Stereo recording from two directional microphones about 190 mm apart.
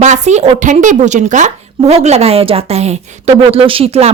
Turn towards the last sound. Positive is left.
turn(degrees=-30)  # may be behind; listen again after turning